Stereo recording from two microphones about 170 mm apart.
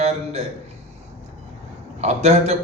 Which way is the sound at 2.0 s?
40° right (ahead or behind).